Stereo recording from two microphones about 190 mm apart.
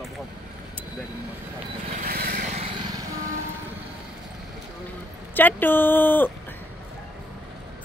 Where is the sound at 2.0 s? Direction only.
50° right (ahead or behind).